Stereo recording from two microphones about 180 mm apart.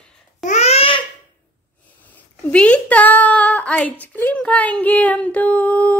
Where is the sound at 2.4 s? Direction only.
5° left (ahead or behind).